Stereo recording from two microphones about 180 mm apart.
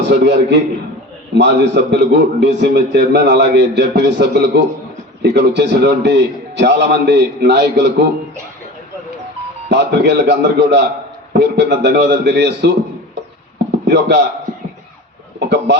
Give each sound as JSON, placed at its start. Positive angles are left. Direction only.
{"t": 0.0, "sound": "a man's voice", "side_deg": -75}
{"t": 9.6, "sound": "a man's voice", "side_deg": -70}
{"t": 13.7, "sound": "a sound", "side_deg": -70}
{"t": 15.4, "sound": "chicken", "side_deg": -65}